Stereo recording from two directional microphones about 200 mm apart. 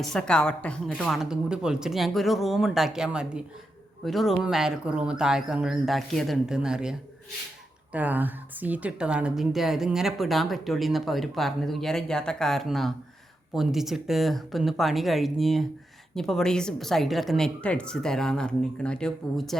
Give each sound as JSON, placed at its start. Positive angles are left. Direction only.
{"t": 0.0, "sound": "a woman's voice", "side_deg": 5}
{"t": 7.9, "sound": "a woman's voice", "side_deg": -10}